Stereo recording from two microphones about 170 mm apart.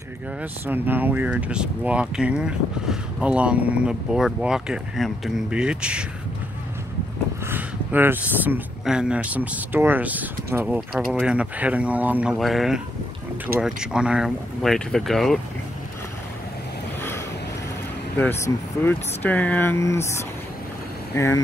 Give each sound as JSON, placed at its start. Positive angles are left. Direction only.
{"t": 0.4, "sound": "speech", "side_deg": -10}
{"t": 7.4, "sound": "speech", "side_deg": -10}
{"t": 18.2, "sound": "speech", "side_deg": 15}
{"t": 21.1, "sound": "speech", "side_deg": 15}